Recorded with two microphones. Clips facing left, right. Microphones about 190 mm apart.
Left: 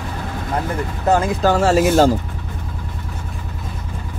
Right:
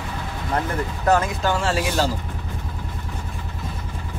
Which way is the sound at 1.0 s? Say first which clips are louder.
Left 4 dB; 30° left (ahead or behind).